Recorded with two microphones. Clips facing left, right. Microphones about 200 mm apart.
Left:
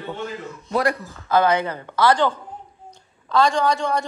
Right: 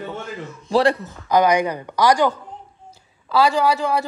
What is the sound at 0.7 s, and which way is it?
Speech, 30° right (ahead or behind).